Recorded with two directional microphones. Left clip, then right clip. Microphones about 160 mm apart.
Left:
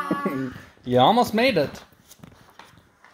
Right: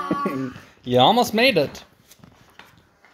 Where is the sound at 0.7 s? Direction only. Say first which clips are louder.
Right 1 dB; 5° right (ahead or behind).